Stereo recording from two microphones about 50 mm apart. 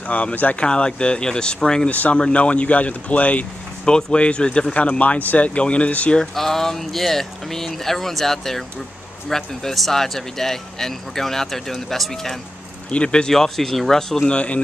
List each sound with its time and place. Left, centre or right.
0.0 s speech: left
0.7 s speech: centre
1.9 s speech: left
3.8 s speech: centre
6.3 s speech: centre
12.9 s speech: centre
13.3 s speech: centre